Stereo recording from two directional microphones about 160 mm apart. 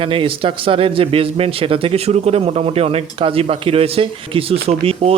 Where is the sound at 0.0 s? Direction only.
35° right (ahead or behind).